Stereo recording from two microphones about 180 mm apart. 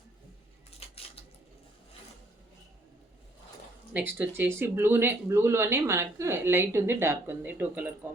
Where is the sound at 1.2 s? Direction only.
30° left (ahead or behind).